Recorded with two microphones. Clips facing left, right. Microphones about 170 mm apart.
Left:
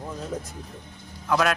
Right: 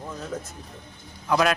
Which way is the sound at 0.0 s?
15° left (ahead or behind).